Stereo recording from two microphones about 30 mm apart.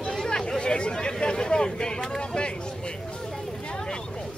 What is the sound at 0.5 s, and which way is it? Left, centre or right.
Chatter, left.